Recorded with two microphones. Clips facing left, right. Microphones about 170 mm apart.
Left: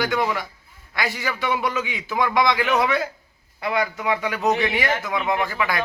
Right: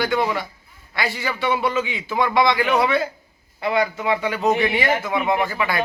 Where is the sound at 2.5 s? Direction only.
Centre (ahead or behind).